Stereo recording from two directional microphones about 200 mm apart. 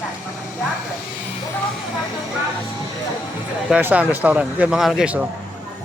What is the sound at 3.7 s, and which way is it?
Speech, 10° right (ahead or behind).